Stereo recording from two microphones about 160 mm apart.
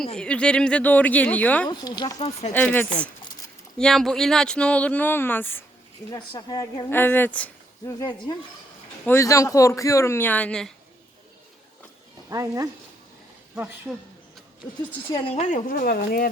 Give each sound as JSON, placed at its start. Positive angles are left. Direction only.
{"t": 0.2, "sound": "speech", "side_deg": 5}
{"t": 1.6, "sound": "a woman's voice", "side_deg": 25}
{"t": 2.1, "sound": "speech", "side_deg": 40}
{"t": 2.5, "sound": "speech", "side_deg": 10}
{"t": 6.1, "sound": "a woman's voice", "side_deg": 25}
{"t": 6.9, "sound": "speech", "side_deg": 15}
{"t": 7.9, "sound": "a woman's voice", "side_deg": 25}
{"t": 12.3, "sound": "speech", "side_deg": -20}
{"t": 15.1, "sound": "a woman's voice", "side_deg": 35}